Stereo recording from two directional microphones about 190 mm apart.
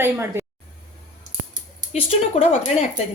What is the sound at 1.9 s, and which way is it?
Speech, 30° left (ahead or behind).